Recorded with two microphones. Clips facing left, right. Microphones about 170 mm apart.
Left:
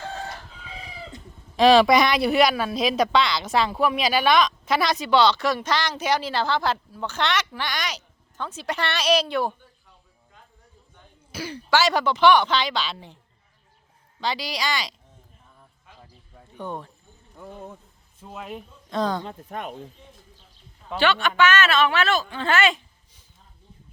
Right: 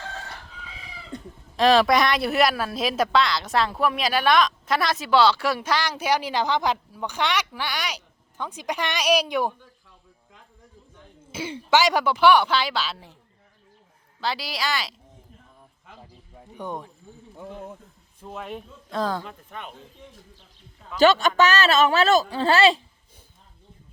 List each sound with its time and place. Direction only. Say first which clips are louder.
1.5 s speech: left 2 dB; centre (ahead or behind)
11.3 s speech: right 2 dB; 25° right (ahead or behind); by 13.1 s 5° right (ahead or behind)
14.2 s speech: left 1 dB; 5° right (ahead or behind)
16.6 s speech: even; 15° right (ahead or behind)
18.2 s speech: right 1 dB; 5° left (ahead or behind)
19.5 s speech: left 6 dB; 40° left (ahead or behind)
21.0 s speech: right 3 dB; 40° right (ahead or behind)